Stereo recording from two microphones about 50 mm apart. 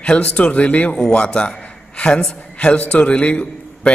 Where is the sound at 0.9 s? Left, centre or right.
Centre.